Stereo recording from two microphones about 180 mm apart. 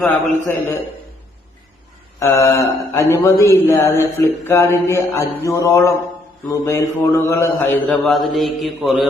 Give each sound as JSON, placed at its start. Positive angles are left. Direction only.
{"t": 0.0, "sound": "a man's voice", "side_deg": 10}
{"t": 2.1, "sound": "a man's voice", "side_deg": 15}
{"t": 8.0, "sound": "mantra", "side_deg": 0}